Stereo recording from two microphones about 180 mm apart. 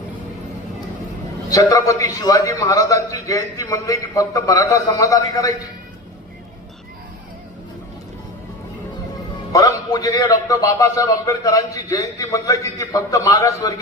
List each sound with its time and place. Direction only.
1.5 s a man's voice: 20° left (ahead or behind)
9.5 s a man's voice: 20° left (ahead or behind)